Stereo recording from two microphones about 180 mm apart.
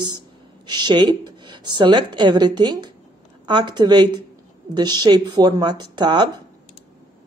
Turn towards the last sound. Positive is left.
turn(degrees=-25)  # may be behind; listen again after turning